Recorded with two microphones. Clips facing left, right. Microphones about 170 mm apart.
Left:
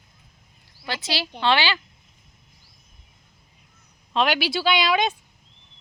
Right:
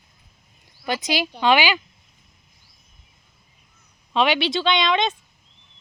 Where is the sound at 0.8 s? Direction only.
15° right (ahead or behind).